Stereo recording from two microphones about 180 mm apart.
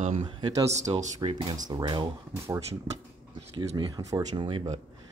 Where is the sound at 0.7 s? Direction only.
40° right (ahead or behind).